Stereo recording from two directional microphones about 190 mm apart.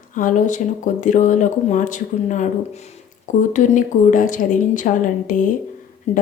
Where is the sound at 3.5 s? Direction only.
40° left (ahead or behind).